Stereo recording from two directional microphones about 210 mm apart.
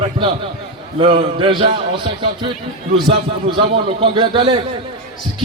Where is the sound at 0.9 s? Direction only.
25° right (ahead or behind).